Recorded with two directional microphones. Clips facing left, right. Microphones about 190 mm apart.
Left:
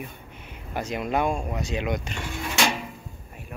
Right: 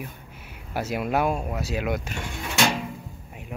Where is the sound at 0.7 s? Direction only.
5° right (ahead or behind).